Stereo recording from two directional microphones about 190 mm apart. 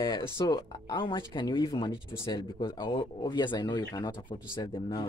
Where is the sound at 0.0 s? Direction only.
25° left (ahead or behind).